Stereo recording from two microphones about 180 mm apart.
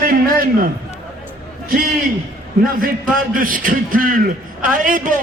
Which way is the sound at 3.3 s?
50° right (ahead or behind).